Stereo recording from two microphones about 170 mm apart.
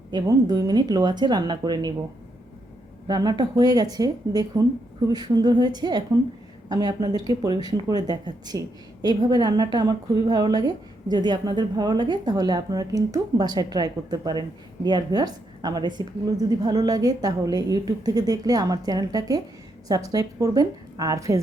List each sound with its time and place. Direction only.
0.1 s a woman's voice: 20° right (ahead or behind)
3.1 s a woman's voice: 25° right (ahead or behind)